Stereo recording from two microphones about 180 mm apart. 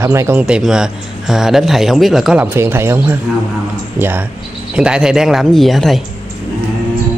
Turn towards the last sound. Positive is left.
turn(degrees=0)  # may be behind; listen again after turning